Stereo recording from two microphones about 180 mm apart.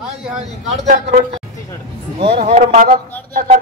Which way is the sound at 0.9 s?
40° right (ahead or behind).